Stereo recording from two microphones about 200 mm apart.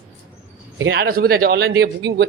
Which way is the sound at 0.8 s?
60° right (ahead or behind).